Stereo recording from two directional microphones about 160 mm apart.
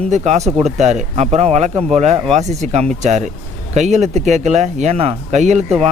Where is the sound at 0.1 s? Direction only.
45° right (ahead or behind).